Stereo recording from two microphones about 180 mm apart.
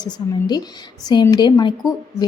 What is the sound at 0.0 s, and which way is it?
A woman's voice, 25° left (ahead or behind).